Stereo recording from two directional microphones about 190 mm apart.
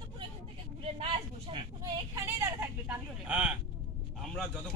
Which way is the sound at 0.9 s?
25° right (ahead or behind).